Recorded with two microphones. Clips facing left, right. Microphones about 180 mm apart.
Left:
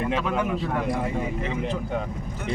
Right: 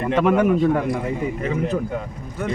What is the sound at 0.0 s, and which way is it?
A man's voice, 55° right (ahead or behind).